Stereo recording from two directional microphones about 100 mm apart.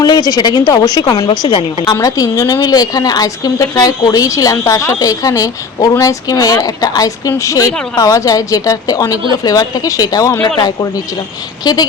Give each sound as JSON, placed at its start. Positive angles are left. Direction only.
{"t": 0.0, "sound": "a woman's voice", "side_deg": 40}